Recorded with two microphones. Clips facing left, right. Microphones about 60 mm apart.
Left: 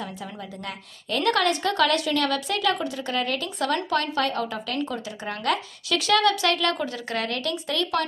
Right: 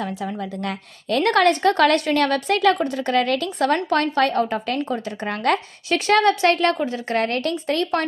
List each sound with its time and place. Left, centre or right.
0.6 s a woman's voice: right